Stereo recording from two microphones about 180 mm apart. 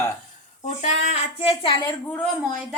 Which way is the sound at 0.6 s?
40° left (ahead or behind).